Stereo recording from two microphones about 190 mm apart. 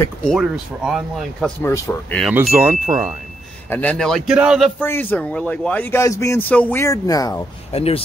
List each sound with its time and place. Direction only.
0.0 s speech: 5° left (ahead or behind)
1.6 s speech: 15° left (ahead or behind)
2.5 s speech: 10° right (ahead or behind)
3.7 s speech: 10° left (ahead or behind)
4.8 s speech: 10° left (ahead or behind)
7.7 s speech: 30° left (ahead or behind)